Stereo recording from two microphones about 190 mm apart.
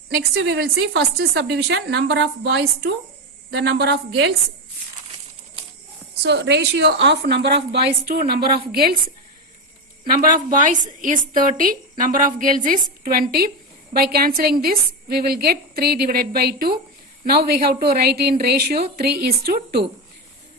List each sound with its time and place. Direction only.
0.3 s a woman's voice: 65° right (ahead or behind)
6.2 s a woman's voice: 65° right (ahead or behind)
10.0 s a woman's voice: 45° right (ahead or behind)